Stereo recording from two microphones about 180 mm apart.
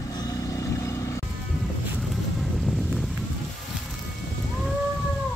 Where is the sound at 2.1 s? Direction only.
Centre (ahead or behind).